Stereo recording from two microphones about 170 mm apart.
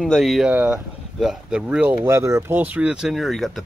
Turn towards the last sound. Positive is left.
turn(degrees=0)  # may be behind; listen again after turning